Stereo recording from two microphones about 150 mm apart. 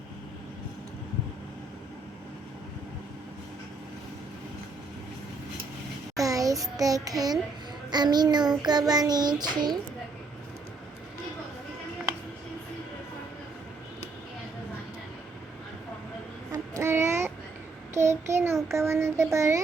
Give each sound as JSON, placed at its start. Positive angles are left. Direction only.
{"t": 6.1, "sound": "a sound", "side_deg": -25}
{"t": 7.9, "sound": "child singing", "side_deg": -30}
{"t": 16.5, "sound": "child singing", "side_deg": -20}